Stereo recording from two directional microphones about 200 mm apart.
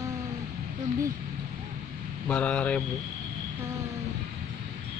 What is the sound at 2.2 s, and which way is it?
Speech, 5° left (ahead or behind).